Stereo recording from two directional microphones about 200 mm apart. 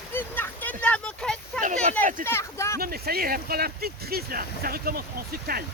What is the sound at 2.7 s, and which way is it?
Speech, 50° right (ahead or behind).